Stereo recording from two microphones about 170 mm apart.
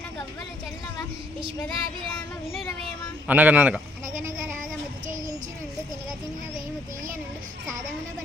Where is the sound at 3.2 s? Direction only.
10° right (ahead or behind).